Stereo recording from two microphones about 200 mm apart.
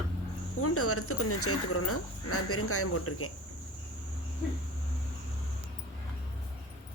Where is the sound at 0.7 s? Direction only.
90° left.